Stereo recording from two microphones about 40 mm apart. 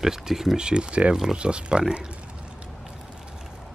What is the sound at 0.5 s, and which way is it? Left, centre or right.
Speech, right.